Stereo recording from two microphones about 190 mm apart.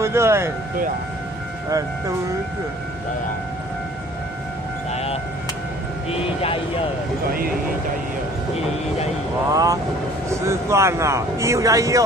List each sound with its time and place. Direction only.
0.0 s speech: 15° right (ahead or behind)
1.7 s speech: 15° right (ahead or behind)
4.9 s vehicle: 30° left (ahead or behind)
6.0 s speech: 30° left (ahead or behind)
9.5 s speech: 20° right (ahead or behind)